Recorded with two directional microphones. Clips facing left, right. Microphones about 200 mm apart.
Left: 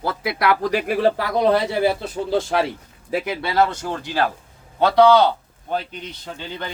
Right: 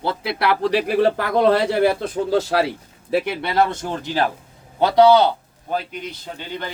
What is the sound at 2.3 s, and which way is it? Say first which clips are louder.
Speech: right 1 dB; 40° right (ahead or behind).